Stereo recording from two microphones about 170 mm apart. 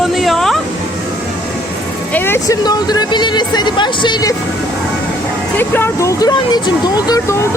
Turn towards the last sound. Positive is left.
turn(degrees=25)  # may be behind; listen again after turning